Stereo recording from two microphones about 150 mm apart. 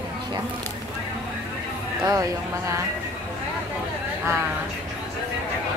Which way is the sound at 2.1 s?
20° right (ahead or behind).